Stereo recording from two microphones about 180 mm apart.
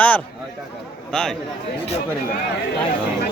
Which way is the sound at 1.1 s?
5° left (ahead or behind).